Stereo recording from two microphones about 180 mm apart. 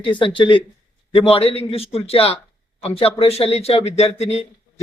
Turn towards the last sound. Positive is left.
turn(degrees=35)  # may be behind; listen again after turning